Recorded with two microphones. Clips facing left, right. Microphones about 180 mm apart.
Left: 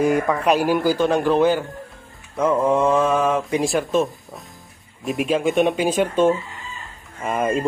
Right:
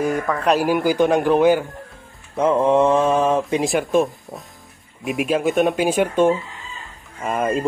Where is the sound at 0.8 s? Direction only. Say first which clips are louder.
Right 2 dB; 15° right (ahead or behind).